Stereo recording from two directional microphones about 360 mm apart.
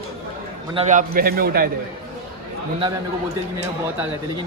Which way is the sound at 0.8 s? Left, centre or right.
Right.